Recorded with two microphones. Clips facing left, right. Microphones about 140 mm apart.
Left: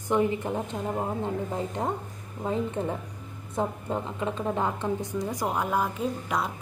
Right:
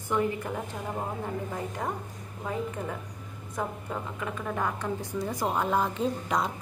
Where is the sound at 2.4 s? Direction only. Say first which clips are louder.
Left 4 dB; 25° left (ahead or behind).